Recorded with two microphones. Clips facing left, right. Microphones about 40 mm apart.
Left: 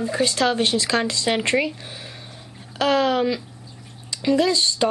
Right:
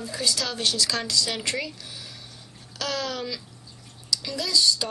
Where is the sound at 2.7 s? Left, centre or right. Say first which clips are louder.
Left 11 dB; left.